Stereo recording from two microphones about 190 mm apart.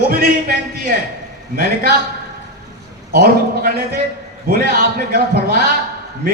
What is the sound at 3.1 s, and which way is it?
A man's voice, 55° right (ahead or behind).